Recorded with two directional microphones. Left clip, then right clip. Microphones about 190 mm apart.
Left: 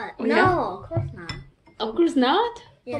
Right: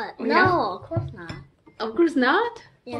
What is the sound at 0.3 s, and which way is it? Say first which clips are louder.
Speech: even; 15° right (ahead or behind).